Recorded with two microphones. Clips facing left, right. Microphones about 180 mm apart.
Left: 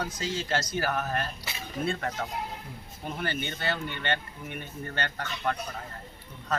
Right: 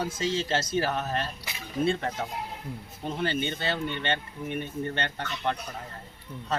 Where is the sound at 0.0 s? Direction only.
25° right (ahead or behind).